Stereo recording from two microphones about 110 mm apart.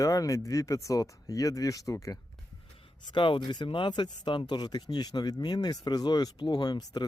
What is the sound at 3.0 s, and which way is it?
Speech, 50° left (ahead or behind).